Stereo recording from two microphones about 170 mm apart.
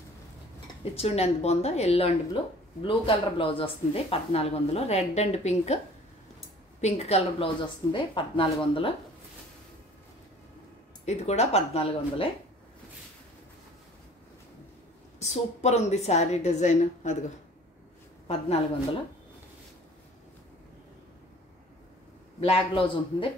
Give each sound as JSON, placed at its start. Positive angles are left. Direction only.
{"t": 0.9, "sound": "speech", "side_deg": 40}
{"t": 6.8, "sound": "speech", "side_deg": 35}
{"t": 11.1, "sound": "speech", "side_deg": 40}
{"t": 15.1, "sound": "speech", "side_deg": 40}
{"t": 18.2, "sound": "a woman's voice", "side_deg": 35}
{"t": 22.4, "sound": "speech", "side_deg": 35}